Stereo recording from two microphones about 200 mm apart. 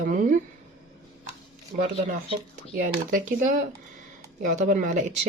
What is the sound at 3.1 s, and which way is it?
Speech, 40° right (ahead or behind).